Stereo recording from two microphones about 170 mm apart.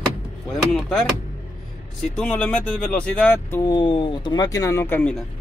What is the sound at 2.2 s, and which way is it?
Speech, 5° left (ahead or behind).